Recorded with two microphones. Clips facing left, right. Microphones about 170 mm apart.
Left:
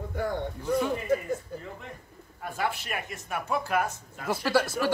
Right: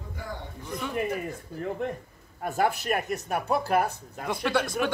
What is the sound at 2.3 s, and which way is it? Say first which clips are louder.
Speech: right 5 dB; 45° right (ahead or behind).